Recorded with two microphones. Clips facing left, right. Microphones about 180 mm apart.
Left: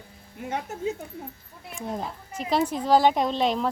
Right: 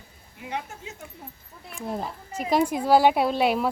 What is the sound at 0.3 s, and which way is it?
Speech, 45° left (ahead or behind).